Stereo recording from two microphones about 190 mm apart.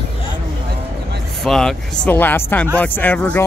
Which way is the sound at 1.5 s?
5° left (ahead or behind).